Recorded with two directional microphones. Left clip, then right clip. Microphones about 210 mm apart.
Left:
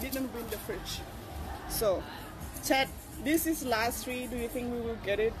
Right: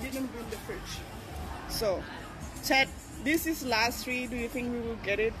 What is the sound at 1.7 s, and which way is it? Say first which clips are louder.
A woman's voice: left 1 dB; 15° left (ahead or behind).